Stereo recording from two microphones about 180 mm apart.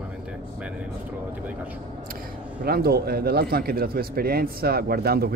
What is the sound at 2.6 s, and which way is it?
A man's voice, 60° right (ahead or behind).